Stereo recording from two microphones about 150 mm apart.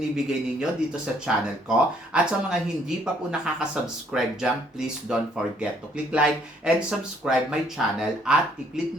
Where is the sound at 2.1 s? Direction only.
5° right (ahead or behind).